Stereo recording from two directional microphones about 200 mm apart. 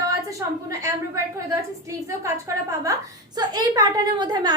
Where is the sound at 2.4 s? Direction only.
15° right (ahead or behind).